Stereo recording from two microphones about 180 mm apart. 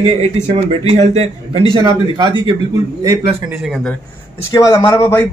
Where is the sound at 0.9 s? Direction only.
35° right (ahead or behind); by 3.2 s 20° right (ahead or behind).